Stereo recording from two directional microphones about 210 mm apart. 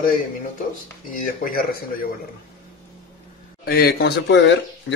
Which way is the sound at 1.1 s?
45° left (ahead or behind).